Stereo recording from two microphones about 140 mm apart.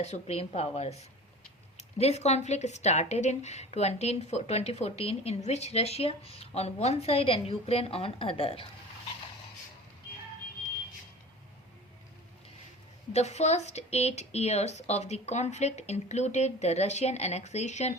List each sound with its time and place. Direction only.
0.0 s speech: 50° left (ahead or behind)
13.1 s speech: 55° left (ahead or behind)